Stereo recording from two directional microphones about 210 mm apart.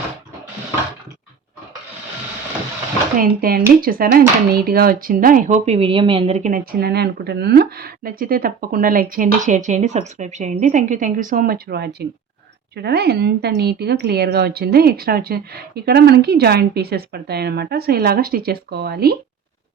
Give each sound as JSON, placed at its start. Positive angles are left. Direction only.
{"t": 3.2, "sound": "speech", "side_deg": -45}